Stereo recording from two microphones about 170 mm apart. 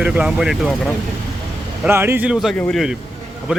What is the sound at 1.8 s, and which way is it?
Speech, 15° right (ahead or behind).